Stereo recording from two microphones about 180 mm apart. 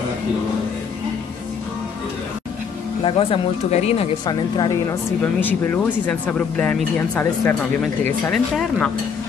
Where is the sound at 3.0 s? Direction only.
30° left (ahead or behind).